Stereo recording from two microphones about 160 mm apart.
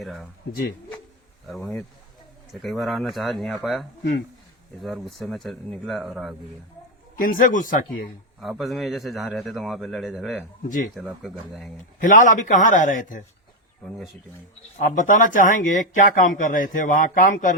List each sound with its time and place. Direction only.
0.0 s speech: centre (ahead or behind)
1.5 s speech: centre (ahead or behind)
7.2 s speech: 60° left (ahead or behind)
8.4 s speech: centre (ahead or behind)
11.9 s a man's voice: 55° left (ahead or behind)
14.8 s speech: 55° left (ahead or behind)